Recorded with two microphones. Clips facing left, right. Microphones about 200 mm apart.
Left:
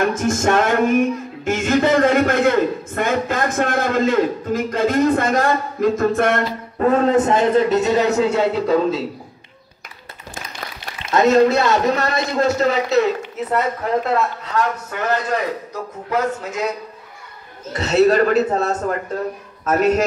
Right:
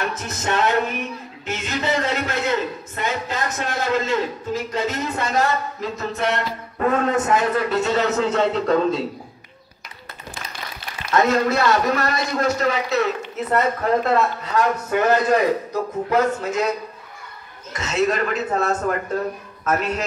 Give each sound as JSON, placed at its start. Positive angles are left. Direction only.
{"t": 0.0, "sound": "speech", "side_deg": 50}
{"t": 6.8, "sound": "a man's voice", "side_deg": 35}
{"t": 11.1, "sound": "a man's voice", "side_deg": 25}
{"t": 13.2, "sound": "a man's voice", "side_deg": 10}
{"t": 14.5, "sound": "a man's voice", "side_deg": -15}
{"t": 17.7, "sound": "a man's voice", "side_deg": 35}